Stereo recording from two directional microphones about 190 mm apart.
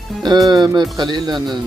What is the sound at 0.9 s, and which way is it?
Speech, 20° right (ahead or behind).